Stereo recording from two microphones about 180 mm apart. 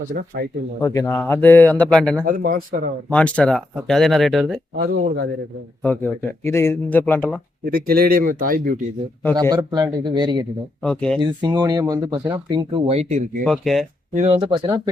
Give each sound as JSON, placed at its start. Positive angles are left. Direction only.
{"t": 0.1, "sound": "speech", "side_deg": -55}
{"t": 0.8, "sound": "speech", "side_deg": 15}
{"t": 2.2, "sound": "speech", "side_deg": -50}
{"t": 3.1, "sound": "speech", "side_deg": 5}
{"t": 4.8, "sound": "speech", "side_deg": -65}
{"t": 5.8, "sound": "speech", "side_deg": 10}
{"t": 7.6, "sound": "speech", "side_deg": -55}
{"t": 9.3, "sound": "speech", "side_deg": -25}
{"t": 10.8, "sound": "speech", "side_deg": 5}
{"t": 11.4, "sound": "speech", "side_deg": -20}
{"t": 13.4, "sound": "speech", "side_deg": 0}
{"t": 14.1, "sound": "speech", "side_deg": -45}
{"t": 14.3, "sound": "speech", "side_deg": -30}